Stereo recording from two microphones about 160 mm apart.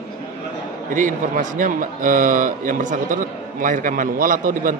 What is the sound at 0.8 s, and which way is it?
A man's voice, 55° right (ahead or behind).